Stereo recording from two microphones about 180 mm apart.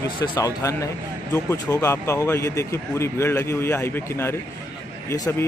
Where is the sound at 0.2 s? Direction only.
20° left (ahead or behind).